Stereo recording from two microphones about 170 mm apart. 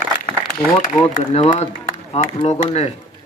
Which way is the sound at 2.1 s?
35° left (ahead or behind).